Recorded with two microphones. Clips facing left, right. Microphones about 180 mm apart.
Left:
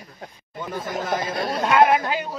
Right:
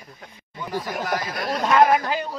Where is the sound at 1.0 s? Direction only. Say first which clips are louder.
Left 2 dB; 25° left (ahead or behind).